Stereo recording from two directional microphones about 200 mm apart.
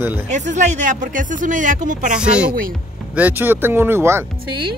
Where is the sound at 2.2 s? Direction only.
5° right (ahead or behind).